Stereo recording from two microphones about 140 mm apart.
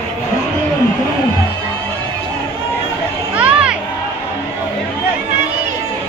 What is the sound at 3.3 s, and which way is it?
Music, 10° right (ahead or behind).